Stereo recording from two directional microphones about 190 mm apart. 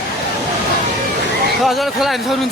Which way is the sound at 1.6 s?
Centre (ahead or behind).